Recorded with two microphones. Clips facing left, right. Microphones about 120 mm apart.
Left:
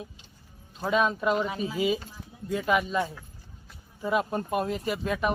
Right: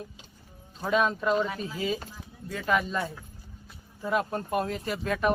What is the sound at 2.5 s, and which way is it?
Speech, 15° left (ahead or behind).